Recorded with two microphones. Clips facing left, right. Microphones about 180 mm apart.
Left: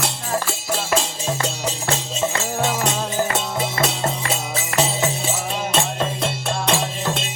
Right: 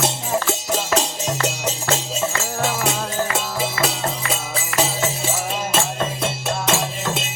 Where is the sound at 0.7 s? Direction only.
15° right (ahead or behind).